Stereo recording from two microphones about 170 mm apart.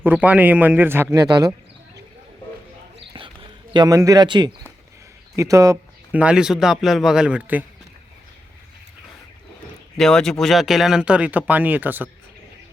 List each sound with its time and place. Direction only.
0.0 s speech: 10° right (ahead or behind); by 1.5 s 25° right (ahead or behind)
3.1 s a sound: 30° right (ahead or behind)
5.4 s speech: 20° right (ahead or behind)
6.1 s a man's voice: 5° right (ahead or behind)
10.0 s speech: 5° left (ahead or behind)